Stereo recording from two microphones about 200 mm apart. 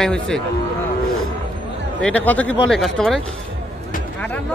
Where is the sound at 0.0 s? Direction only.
Centre (ahead or behind).